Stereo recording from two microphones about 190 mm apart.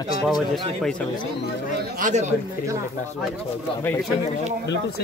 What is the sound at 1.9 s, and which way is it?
Speech, 40° right (ahead or behind).